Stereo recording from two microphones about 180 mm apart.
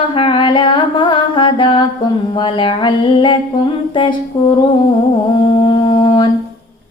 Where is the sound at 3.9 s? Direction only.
25° left (ahead or behind).